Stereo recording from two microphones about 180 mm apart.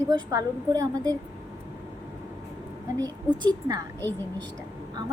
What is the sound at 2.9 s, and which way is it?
Speech, 20° right (ahead or behind).